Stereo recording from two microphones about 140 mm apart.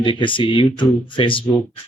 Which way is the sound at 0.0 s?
35° left (ahead or behind).